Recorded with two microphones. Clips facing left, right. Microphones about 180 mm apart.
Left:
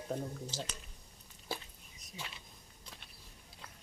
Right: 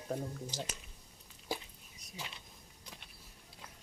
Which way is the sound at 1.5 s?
15° right (ahead or behind).